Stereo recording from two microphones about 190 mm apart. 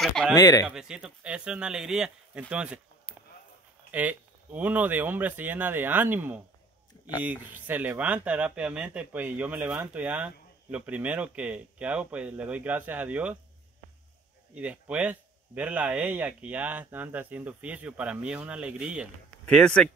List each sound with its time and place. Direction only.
0.0 s speech: centre (ahead or behind)
0.4 s speech: 20° left (ahead or behind)
0.7 s speech: 5° right (ahead or behind)
3.1 s a sound: 25° left (ahead or behind)
3.9 s speech: 10° right (ahead or behind)
14.5 s speech: 5° right (ahead or behind)